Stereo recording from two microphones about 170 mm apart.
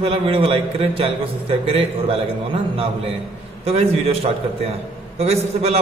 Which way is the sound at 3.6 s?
35° right (ahead or behind).